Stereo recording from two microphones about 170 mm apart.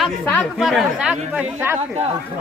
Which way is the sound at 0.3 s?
5° left (ahead or behind).